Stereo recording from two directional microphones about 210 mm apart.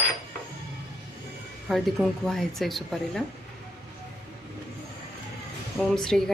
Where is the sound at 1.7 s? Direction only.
Centre (ahead or behind).